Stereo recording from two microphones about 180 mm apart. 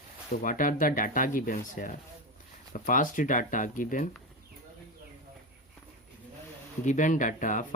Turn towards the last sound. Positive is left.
turn(degrees=45)  # may be behind; listen again after turning